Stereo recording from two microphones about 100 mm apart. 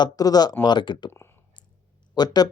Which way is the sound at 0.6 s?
50° left (ahead or behind).